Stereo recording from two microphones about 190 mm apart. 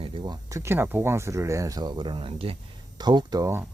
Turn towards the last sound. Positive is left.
turn(degrees=-15)  # may be behind; listen again after turning